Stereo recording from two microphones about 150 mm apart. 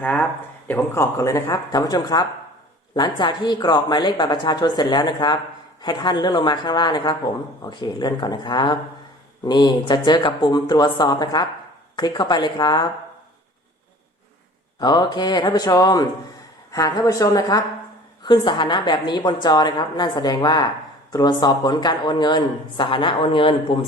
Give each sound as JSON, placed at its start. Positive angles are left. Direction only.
{"t": 0.0, "sound": "speech", "side_deg": 10}
{"t": 14.8, "sound": "speech", "side_deg": 30}